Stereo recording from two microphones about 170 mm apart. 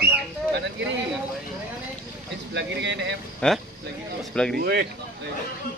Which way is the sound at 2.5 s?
90° right.